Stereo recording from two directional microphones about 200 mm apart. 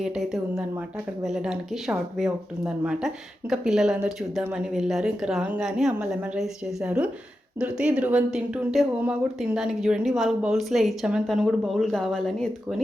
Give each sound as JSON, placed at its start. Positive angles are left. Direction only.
{"t": 0.0, "sound": "speech", "side_deg": 0}